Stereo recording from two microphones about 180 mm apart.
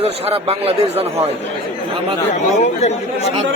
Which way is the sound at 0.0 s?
35° right (ahead or behind).